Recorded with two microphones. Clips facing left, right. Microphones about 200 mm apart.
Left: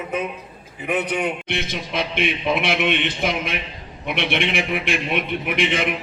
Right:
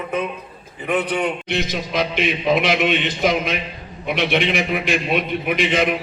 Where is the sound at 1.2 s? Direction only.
60° left (ahead or behind).